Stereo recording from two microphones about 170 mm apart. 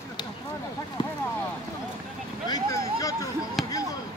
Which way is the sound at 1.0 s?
25° left (ahead or behind).